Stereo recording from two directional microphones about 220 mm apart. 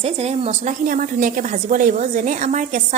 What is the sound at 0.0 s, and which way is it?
A woman's voice, 30° right (ahead or behind).